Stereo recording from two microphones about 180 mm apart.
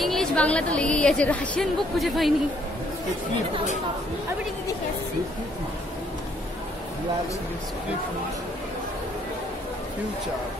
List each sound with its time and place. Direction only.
0.0 s a woman's voice: centre (ahead or behind)